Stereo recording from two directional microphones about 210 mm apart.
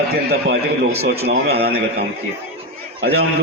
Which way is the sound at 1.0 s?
50° right (ahead or behind).